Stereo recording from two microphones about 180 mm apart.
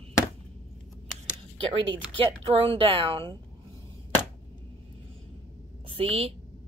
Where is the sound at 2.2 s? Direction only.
30° right (ahead or behind).